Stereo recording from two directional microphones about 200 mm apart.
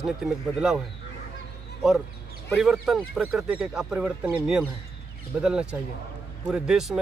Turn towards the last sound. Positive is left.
turn(degrees=0)  # may be behind; listen again after turning